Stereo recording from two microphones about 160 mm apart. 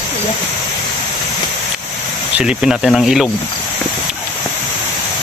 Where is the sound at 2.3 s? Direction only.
5° right (ahead or behind).